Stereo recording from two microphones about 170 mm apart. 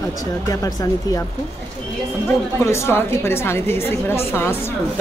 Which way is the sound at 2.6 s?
15° left (ahead or behind).